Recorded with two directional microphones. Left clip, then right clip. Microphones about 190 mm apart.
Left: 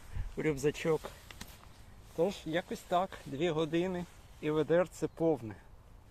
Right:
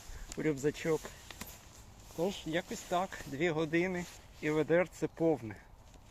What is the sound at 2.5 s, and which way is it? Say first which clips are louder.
Speech: left 1 dB; 10° left (ahead or behind).